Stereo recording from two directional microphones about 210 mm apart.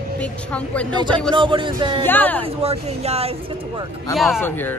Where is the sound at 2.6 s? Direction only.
30° right (ahead or behind).